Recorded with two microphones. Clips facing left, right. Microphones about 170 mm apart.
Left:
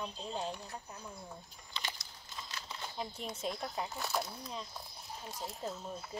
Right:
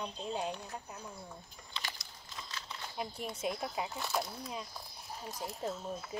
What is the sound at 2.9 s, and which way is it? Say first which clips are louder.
Speech: right 3 dB; 10° right (ahead or behind).